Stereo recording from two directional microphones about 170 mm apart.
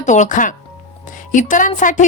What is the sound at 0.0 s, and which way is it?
A woman's voice, 45° left (ahead or behind).